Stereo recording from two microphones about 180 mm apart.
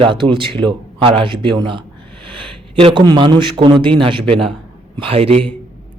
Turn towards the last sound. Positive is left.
turn(degrees=-35)  # may be behind; listen again after turning